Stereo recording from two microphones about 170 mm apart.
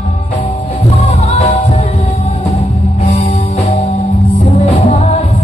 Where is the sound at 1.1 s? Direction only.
40° left (ahead or behind).